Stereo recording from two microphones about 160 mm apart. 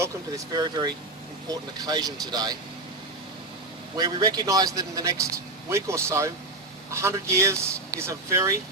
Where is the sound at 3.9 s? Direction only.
25° right (ahead or behind).